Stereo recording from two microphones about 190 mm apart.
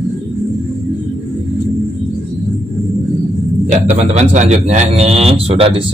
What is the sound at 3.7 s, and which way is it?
A man's voice, 40° right (ahead or behind).